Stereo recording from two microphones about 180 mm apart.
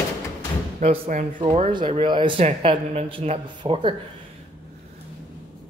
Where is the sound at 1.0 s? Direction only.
50° right (ahead or behind).